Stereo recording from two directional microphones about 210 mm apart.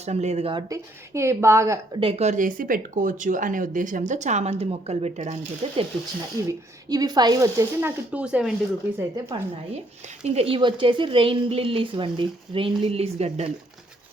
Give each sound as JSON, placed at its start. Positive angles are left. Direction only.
{"t": 0.0, "sound": "speech", "side_deg": -30}
{"t": 2.0, "sound": "speech", "side_deg": -30}
{"t": 6.5, "sound": "speech", "side_deg": -20}
{"t": 9.0, "sound": "speech", "side_deg": -15}
{"t": 10.2, "sound": "a woman's voice", "side_deg": -30}